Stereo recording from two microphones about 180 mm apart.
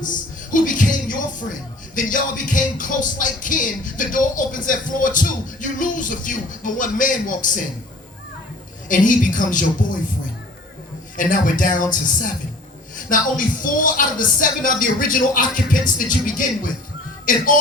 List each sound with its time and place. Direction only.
0.5 s music: 45° left (ahead or behind)
8.9 s music: 45° left (ahead or behind)
11.2 s music: 45° left (ahead or behind)